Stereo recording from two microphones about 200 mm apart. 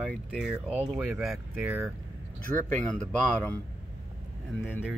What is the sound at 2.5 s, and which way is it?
Speech, 10° left (ahead or behind).